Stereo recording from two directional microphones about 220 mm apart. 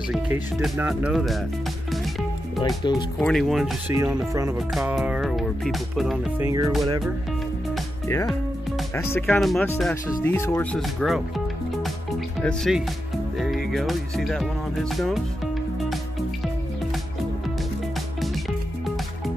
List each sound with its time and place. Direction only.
0.1 s speech: 5° right (ahead or behind)
1.9 s music: centre (ahead or behind)
2.8 s speech: 20° left (ahead or behind)
3.2 s speech: centre (ahead or behind)
3.9 s speech: 15° right (ahead or behind)
4.6 s speech: centre (ahead or behind)
6.4 s speech: 15° right (ahead or behind)
8.9 s speech: 10° left (ahead or behind)
13.4 s music: centre (ahead or behind)